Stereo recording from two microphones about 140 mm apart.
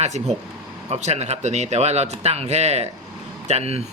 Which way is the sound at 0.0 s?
50° right (ahead or behind).